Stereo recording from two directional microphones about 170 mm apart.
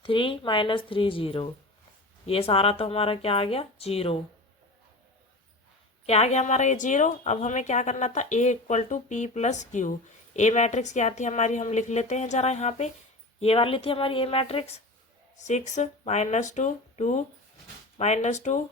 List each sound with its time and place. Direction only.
0.0 s speech: 30° left (ahead or behind)
6.1 s a woman's voice: 40° left (ahead or behind)